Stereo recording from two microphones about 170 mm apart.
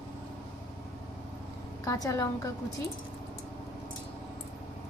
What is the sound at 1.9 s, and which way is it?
Speech, 20° left (ahead or behind).